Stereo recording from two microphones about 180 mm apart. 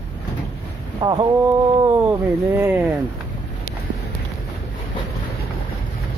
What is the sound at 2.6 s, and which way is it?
Speech, 15° right (ahead or behind).